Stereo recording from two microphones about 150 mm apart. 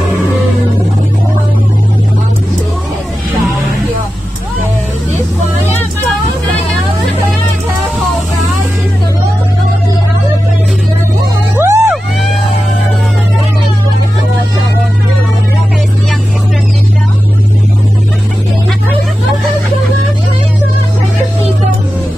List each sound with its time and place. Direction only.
11.5 s vehicle: 20° right (ahead or behind)